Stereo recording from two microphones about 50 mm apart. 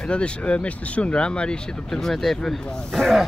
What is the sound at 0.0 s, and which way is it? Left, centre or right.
Speech, left.